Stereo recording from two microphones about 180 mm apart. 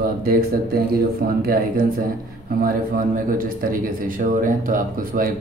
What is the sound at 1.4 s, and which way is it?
A man's voice, 55° right (ahead or behind).